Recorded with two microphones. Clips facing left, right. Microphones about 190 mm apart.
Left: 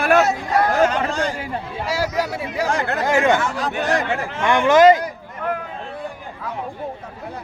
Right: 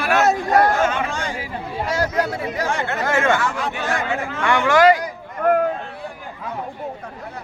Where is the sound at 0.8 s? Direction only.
35° left (ahead or behind).